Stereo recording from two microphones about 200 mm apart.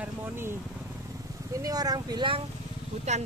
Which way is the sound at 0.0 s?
10° right (ahead or behind).